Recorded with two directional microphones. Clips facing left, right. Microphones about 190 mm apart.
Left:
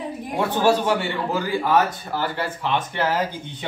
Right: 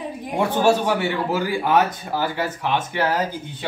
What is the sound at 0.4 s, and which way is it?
Speech, 10° right (ahead or behind).